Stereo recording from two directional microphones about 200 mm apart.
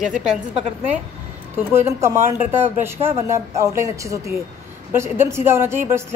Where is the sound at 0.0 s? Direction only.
5° right (ahead or behind).